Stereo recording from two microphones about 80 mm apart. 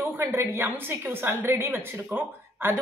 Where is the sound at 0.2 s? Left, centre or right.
Right.